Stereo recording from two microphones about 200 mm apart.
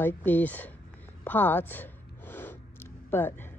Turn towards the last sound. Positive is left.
turn(degrees=10)  # may be behind; listen again after turning